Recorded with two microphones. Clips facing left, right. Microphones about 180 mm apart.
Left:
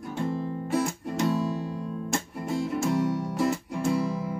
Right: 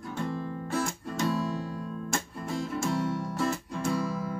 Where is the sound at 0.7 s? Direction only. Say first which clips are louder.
Left 4 dB; 20° left (ahead or behind).